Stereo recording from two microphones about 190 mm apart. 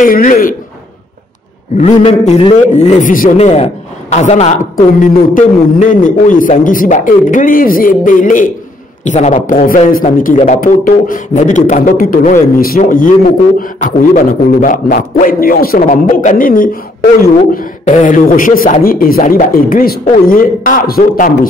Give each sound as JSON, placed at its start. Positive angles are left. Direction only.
{"t": 0.0, "sound": "a man's voice", "side_deg": 45}
{"t": 1.8, "sound": "a man's voice", "side_deg": 35}